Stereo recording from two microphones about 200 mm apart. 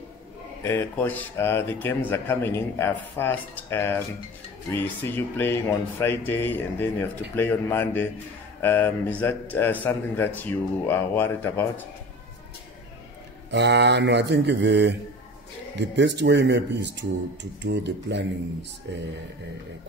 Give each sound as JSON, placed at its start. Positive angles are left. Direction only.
{"t": 0.7, "sound": "speech", "side_deg": 10}
{"t": 13.5, "sound": "speech", "side_deg": -60}